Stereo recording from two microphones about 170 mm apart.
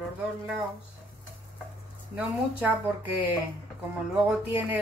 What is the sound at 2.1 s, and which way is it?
Speech, 10° right (ahead or behind).